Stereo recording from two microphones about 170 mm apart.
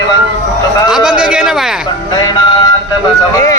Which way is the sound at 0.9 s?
5° right (ahead or behind).